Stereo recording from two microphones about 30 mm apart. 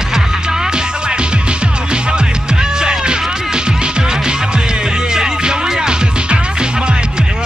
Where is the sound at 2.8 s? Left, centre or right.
Right.